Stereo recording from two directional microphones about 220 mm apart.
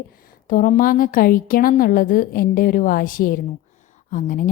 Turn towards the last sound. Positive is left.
turn(degrees=35)  # may be behind; listen again after turning